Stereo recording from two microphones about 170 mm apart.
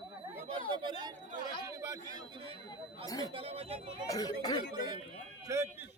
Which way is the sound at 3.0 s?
20° left (ahead or behind).